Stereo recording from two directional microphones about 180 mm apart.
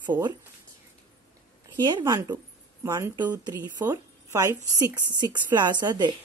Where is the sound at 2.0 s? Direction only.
20° right (ahead or behind).